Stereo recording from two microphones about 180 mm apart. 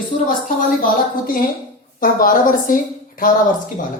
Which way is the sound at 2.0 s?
50° left (ahead or behind).